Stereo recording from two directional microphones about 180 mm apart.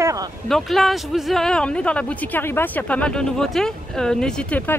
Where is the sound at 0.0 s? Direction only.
20° right (ahead or behind).